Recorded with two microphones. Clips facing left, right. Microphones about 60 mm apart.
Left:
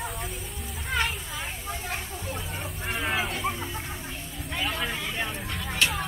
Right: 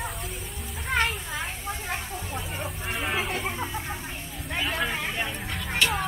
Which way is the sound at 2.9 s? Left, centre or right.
Centre.